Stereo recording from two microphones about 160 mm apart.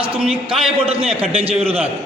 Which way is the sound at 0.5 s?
35° right (ahead or behind).